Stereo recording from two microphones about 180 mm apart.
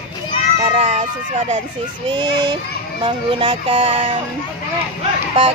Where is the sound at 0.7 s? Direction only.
40° right (ahead or behind).